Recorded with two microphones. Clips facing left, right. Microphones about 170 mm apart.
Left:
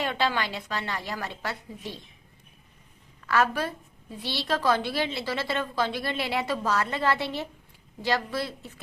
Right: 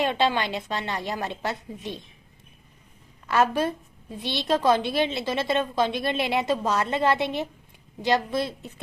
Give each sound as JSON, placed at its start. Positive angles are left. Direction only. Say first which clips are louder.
{"t": 0.0, "sound": "a woman's voice", "louder": "right 4 dB", "side_deg": -20}
{"t": 3.2, "sound": "a woman's voice", "louder": "right 3 dB", "side_deg": -20}